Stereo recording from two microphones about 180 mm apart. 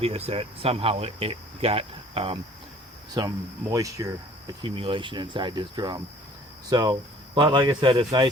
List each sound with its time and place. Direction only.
0.0 s speech: 35° right (ahead or behind)
3.2 s speech: 20° right (ahead or behind)
4.6 s speech: 30° right (ahead or behind)